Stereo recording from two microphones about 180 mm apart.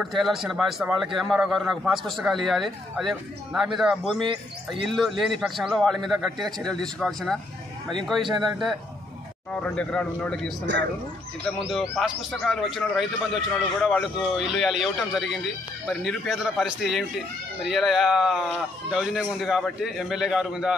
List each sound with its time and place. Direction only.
0.0 s a man's voice: centre (ahead or behind)
11.7 s a man's voice: centre (ahead or behind)